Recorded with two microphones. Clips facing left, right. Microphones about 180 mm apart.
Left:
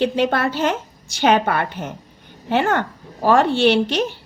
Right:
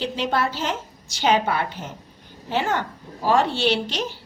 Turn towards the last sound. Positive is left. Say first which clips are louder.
# left 7 dB
turn(degrees=55)  # may be behind; listen again after turning